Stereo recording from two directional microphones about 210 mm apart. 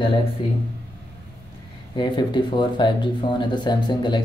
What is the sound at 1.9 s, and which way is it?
Speech, 20° left (ahead or behind).